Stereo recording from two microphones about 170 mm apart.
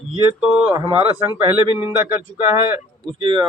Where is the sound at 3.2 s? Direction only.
30° right (ahead or behind).